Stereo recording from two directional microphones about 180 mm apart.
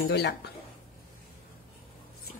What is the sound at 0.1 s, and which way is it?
Speech, 65° left (ahead or behind).